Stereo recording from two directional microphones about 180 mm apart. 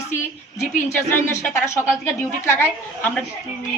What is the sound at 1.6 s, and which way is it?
A woman's voice, 15° left (ahead or behind).